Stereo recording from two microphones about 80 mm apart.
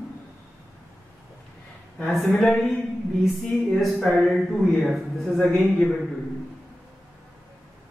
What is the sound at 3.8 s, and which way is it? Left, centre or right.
A man's voice, centre.